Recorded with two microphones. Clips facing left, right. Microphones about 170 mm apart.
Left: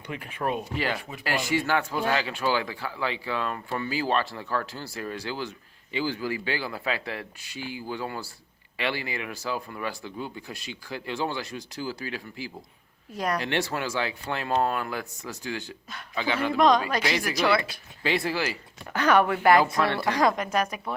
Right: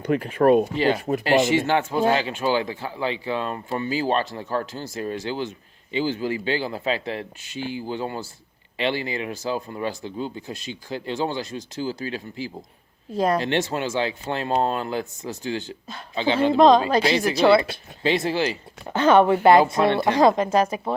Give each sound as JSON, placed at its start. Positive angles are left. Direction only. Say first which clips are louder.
{"t": 0.0, "sound": "speech", "louder": "right 12 dB", "side_deg": -40}
{"t": 1.2, "sound": "speech", "louder": "right 7 dB", "side_deg": -25}